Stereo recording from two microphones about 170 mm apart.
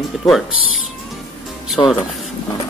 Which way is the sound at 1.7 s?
Centre (ahead or behind).